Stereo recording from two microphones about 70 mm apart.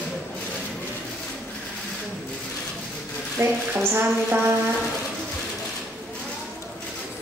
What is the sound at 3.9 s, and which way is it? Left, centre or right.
Music, right.